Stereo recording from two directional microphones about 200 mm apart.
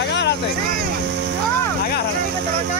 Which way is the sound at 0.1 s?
60° left (ahead or behind).